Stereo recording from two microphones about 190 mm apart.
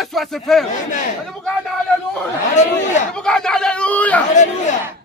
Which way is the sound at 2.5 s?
40° left (ahead or behind).